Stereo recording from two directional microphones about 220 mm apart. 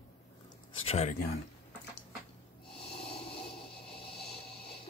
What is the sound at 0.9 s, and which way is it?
Speech, 30° left (ahead or behind).